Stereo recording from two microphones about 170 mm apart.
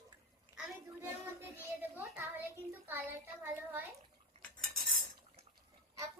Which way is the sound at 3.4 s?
10° right (ahead or behind).